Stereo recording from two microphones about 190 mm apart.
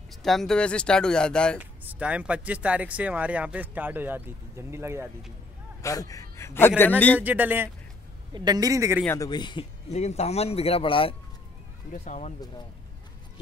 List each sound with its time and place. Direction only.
0.1 s speech: centre (ahead or behind)
1.6 s speech: 10° right (ahead or behind)
5.8 s a man's voice: 15° left (ahead or behind)
7.2 s speech: 10° right (ahead or behind)
8.3 s a man's voice: 20° right (ahead or behind)
9.0 s speech: 15° left (ahead or behind)
9.8 s a man's voice: 35° left (ahead or behind)
11.9 s a man's voice: 40° left (ahead or behind)